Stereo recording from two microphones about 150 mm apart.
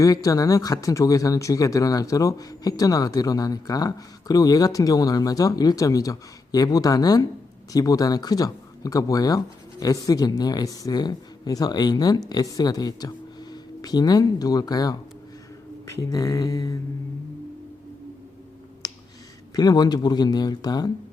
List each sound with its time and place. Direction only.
0.0 s speech: 20° left (ahead or behind)
19.5 s speech: 25° left (ahead or behind)